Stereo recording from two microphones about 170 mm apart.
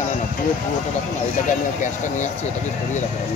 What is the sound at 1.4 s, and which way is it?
Speech, 50° left (ahead or behind).